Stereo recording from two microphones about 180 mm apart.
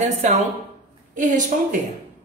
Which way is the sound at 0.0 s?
40° right (ahead or behind).